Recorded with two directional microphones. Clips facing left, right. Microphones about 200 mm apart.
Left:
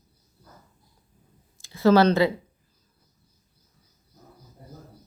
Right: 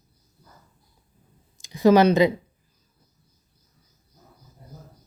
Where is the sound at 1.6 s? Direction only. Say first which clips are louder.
Right 2 dB; 15° right (ahead or behind).